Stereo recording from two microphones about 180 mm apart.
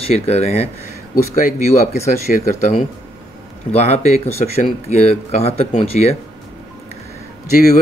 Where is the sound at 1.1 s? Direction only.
50° left (ahead or behind).